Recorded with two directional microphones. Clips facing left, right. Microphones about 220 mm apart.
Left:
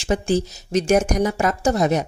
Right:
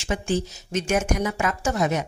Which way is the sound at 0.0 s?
35° left (ahead or behind).